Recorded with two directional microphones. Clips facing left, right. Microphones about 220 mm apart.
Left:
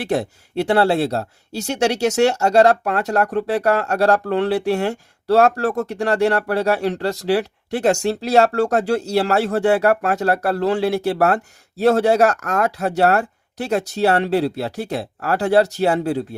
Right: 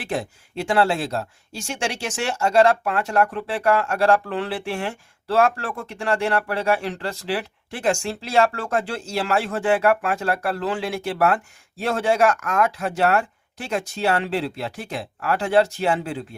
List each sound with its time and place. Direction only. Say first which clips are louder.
0.0 s speech: left 6 dB; 40° left (ahead or behind)